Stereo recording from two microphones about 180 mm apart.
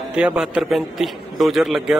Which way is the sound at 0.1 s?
5° right (ahead or behind).